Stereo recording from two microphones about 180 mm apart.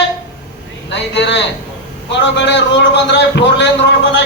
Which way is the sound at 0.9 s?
75° left (ahead or behind).